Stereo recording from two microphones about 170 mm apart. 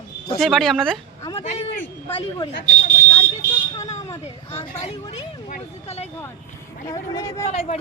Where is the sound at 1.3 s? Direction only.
35° left (ahead or behind).